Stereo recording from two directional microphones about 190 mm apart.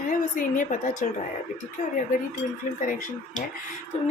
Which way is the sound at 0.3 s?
45° left (ahead or behind).